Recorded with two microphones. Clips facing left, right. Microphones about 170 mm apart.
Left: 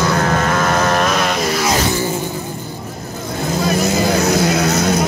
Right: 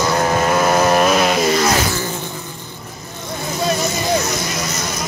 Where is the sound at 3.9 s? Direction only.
65° left (ahead or behind).